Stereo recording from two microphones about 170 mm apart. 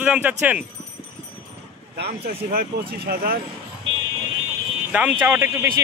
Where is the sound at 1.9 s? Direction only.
70° right (ahead or behind).